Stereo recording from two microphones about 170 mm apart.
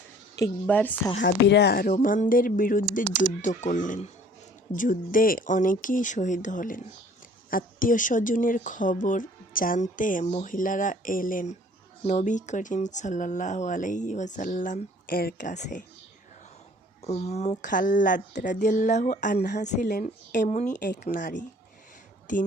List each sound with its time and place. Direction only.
0.3 s a woman's voice: 15° left (ahead or behind)
1.2 s speech: 80° left
1.9 s speech: 50° left (ahead or behind)
17.0 s speech: 40° left (ahead or behind)
22.3 s speech: 50° left (ahead or behind)